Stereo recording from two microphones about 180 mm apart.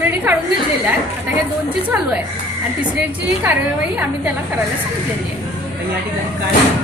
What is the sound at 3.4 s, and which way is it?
Speech, 5° right (ahead or behind).